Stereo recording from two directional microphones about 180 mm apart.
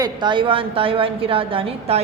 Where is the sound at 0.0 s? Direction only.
25° right (ahead or behind).